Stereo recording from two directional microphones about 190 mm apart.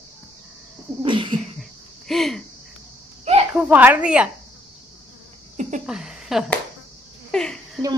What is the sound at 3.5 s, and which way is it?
Speech, 10° right (ahead or behind).